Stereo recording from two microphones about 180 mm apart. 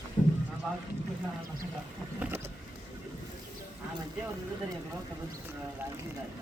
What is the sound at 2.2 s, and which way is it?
Vehicle, 10° right (ahead or behind).